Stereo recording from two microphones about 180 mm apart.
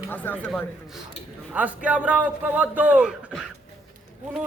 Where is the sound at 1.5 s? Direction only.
10° right (ahead or behind).